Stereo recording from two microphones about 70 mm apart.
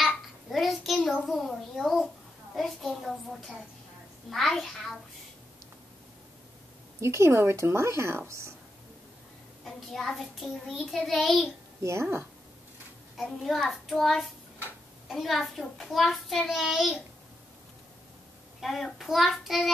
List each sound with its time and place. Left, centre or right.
0.5 s a child's voice: centre
7.0 s speech: right
9.7 s a child's voice: centre
11.8 s a woman's voice: right
13.2 s a child's voice: centre
18.6 s a child's voice: centre